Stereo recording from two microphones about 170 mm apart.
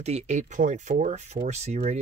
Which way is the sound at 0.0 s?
40° right (ahead or behind).